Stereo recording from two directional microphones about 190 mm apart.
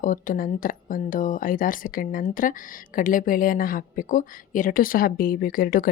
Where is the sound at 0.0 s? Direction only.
45° left (ahead or behind).